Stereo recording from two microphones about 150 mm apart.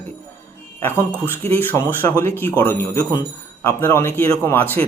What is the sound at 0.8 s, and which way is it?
Speech, 15° left (ahead or behind).